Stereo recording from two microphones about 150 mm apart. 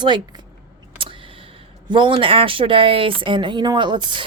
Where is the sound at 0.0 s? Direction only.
30° right (ahead or behind).